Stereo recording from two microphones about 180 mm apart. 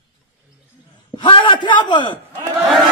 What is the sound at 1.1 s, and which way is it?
A man's voice, 30° left (ahead or behind).